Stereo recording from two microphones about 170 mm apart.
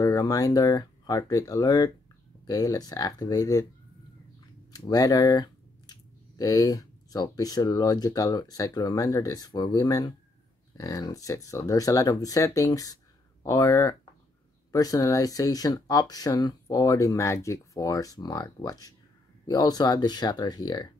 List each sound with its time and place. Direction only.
0.0 s speech: 20° left (ahead or behind)
4.7 s speech: 20° left (ahead or behind)